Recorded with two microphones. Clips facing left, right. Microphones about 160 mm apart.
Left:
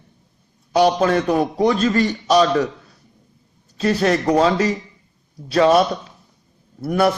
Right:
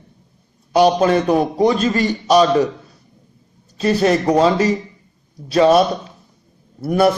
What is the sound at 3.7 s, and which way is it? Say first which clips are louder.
Speech: right 2 dB; 5° right (ahead or behind).